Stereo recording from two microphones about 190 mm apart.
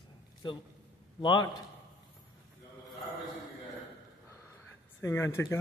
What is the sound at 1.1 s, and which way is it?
Speech, 25° left (ahead or behind).